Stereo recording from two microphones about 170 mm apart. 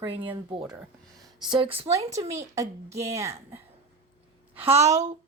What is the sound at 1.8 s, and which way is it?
Speech, 40° right (ahead or behind).